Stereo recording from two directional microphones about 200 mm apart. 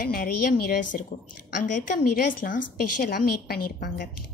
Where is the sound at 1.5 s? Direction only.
40° left (ahead or behind).